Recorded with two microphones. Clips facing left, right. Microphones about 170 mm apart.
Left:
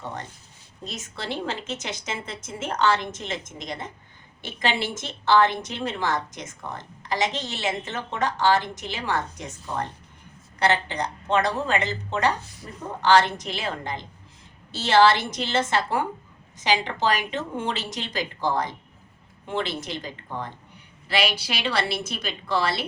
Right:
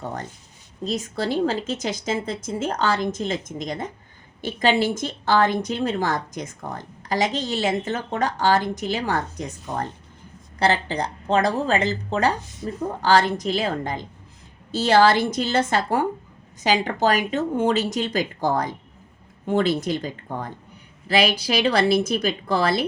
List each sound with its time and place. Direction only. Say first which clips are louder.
0.9 s a woman's voice: right 8 dB; 35° right (ahead or behind)
4.4 s a woman's voice: right 7 dB; 40° right (ahead or behind)